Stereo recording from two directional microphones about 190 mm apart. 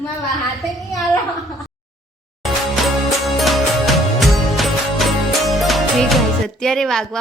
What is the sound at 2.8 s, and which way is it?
Music, centre (ahead or behind).